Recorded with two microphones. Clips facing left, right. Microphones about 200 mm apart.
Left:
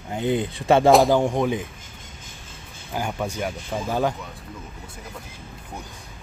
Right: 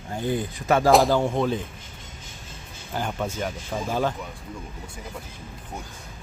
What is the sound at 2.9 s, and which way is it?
Speech, 10° left (ahead or behind).